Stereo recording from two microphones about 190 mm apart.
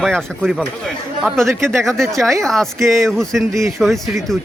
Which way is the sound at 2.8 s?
15° right (ahead or behind).